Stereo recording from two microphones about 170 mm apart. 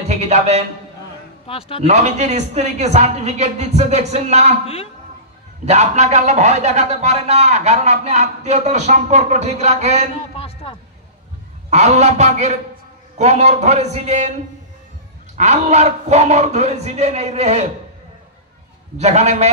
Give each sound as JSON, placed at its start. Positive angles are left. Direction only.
{"t": 0.1, "sound": "a man's voice", "side_deg": -40}
{"t": 1.8, "sound": "a man's voice", "side_deg": -40}
{"t": 5.7, "sound": "a man's voice", "side_deg": -40}
{"t": 10.3, "sound": "music", "side_deg": 35}
{"t": 11.7, "sound": "a man's voice", "side_deg": -40}
{"t": 15.3, "sound": "a man's voice", "side_deg": -40}
{"t": 18.9, "sound": "a man's voice", "side_deg": -40}